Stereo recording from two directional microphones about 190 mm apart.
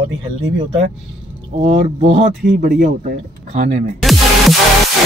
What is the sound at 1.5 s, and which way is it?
Speech, 40° right (ahead or behind).